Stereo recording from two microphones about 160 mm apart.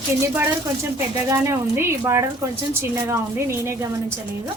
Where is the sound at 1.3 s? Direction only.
15° right (ahead or behind).